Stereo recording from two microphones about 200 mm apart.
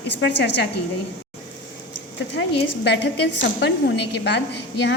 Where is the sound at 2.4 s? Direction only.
75° left (ahead or behind).